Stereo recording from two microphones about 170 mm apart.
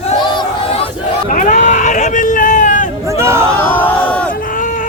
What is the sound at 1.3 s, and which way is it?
Speech, 50° left (ahead or behind).